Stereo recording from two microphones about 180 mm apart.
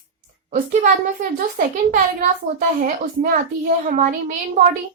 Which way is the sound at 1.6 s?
55° right (ahead or behind).